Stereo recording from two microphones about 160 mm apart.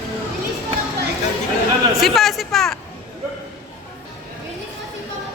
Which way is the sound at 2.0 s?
Centre (ahead or behind).